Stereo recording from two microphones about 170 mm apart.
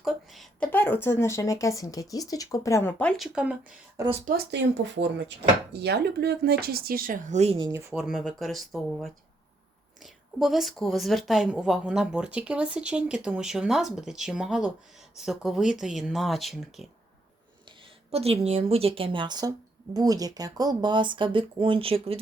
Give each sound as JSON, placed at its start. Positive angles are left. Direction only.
{"t": 0.0, "sound": "speech", "side_deg": 0}
{"t": 0.7, "sound": "speech", "side_deg": 10}
{"t": 3.3, "sound": "a woman's voice", "side_deg": -5}
{"t": 4.0, "sound": "a woman's voice", "side_deg": -20}
{"t": 4.5, "sound": "speech", "side_deg": -90}
{"t": 5.8, "sound": "speech", "side_deg": -70}
{"t": 7.7, "sound": "speech", "side_deg": -15}
{"t": 8.0, "sound": "a woman's voice", "side_deg": -5}
{"t": 18.1, "sound": "a woman's voice", "side_deg": -35}